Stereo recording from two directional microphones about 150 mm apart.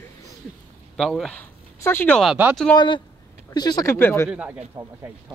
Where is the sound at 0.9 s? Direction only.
Centre (ahead or behind).